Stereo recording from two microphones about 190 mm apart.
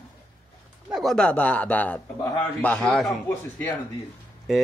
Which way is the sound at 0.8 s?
Centre (ahead or behind).